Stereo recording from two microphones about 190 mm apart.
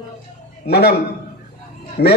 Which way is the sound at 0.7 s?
55° left (ahead or behind).